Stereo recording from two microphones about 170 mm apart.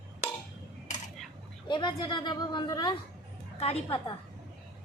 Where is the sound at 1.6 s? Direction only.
25° left (ahead or behind).